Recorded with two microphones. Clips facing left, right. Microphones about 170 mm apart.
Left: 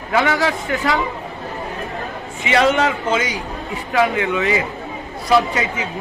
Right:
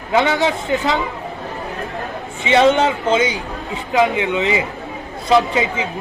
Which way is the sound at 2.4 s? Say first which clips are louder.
Right 3 dB; 25° right (ahead or behind).